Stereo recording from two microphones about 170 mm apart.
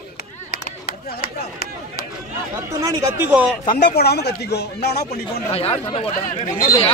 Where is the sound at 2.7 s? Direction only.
20° right (ahead or behind).